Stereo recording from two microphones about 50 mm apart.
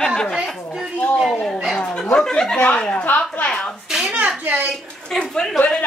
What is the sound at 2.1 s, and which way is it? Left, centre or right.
Speech, centre.